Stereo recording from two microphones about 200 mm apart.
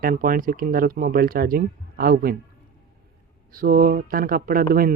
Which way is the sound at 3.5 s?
45° right (ahead or behind).